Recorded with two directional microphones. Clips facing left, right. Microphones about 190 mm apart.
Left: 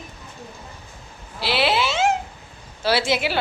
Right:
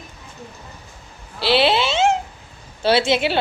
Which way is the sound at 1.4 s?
25° right (ahead or behind).